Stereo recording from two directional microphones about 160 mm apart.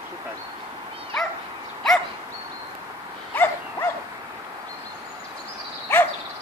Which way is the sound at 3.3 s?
15° left (ahead or behind).